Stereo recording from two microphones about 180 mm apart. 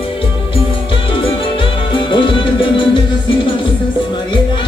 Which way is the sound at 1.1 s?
30° left (ahead or behind).